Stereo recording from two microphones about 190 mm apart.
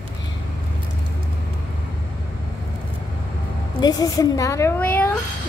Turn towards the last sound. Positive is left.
turn(degrees=10)  # may be behind; listen again after turning